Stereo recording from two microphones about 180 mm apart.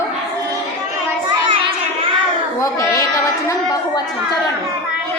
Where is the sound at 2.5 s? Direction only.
20° left (ahead or behind).